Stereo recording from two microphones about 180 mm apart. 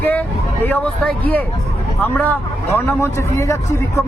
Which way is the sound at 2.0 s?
10° left (ahead or behind).